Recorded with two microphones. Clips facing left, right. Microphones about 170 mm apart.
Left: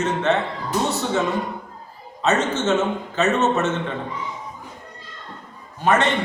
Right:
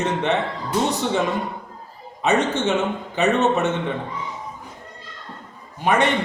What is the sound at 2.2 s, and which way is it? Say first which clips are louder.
A woman's voice: right 1 dB; 15° right (ahead or behind).